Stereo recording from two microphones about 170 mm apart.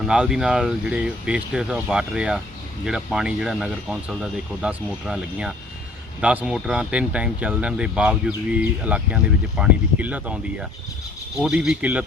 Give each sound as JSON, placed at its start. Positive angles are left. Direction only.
{"t": 0.0, "sound": "speech", "side_deg": -5}